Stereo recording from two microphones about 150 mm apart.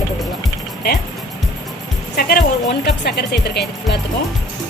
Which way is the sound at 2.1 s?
90° left.